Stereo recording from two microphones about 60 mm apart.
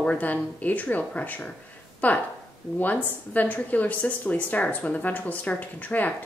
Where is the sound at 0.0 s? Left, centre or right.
Left.